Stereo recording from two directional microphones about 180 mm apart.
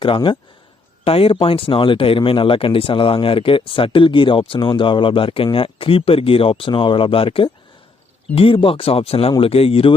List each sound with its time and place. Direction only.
0.0 s speech: 30° left (ahead or behind)